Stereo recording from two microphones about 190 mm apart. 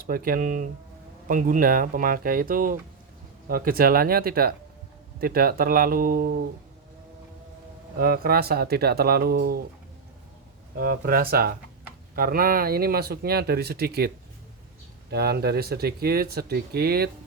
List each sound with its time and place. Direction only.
0.0 s speech: 50° right (ahead or behind)
7.9 s speech: 50° right (ahead or behind)
10.8 s speech: 50° right (ahead or behind)
15.1 s speech: 55° right (ahead or behind)